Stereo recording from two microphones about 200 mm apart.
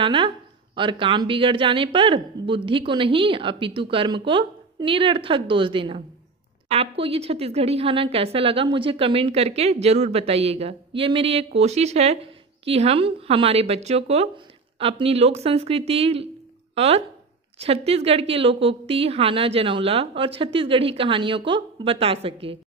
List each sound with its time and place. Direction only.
0.0 s a woman's voice: 25° right (ahead or behind)